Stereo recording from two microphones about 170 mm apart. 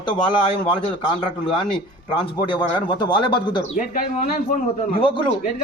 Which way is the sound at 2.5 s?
25° left (ahead or behind).